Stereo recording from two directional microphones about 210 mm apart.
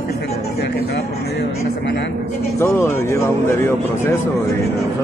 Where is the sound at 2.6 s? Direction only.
10° left (ahead or behind).